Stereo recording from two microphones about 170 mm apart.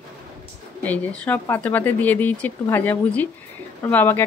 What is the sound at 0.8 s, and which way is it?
A woman's voice, 10° left (ahead or behind).